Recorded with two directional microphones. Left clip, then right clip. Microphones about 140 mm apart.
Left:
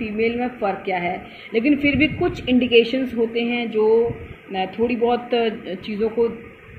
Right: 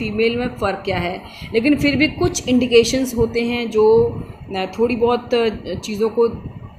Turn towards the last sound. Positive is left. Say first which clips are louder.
# right 3 dB
turn(degrees=-15)  # may be behind; listen again after turning